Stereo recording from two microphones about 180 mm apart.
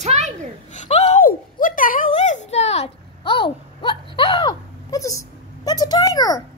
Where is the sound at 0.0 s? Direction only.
40° right (ahead or behind).